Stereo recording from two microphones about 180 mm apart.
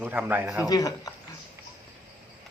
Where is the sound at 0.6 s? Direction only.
20° left (ahead or behind).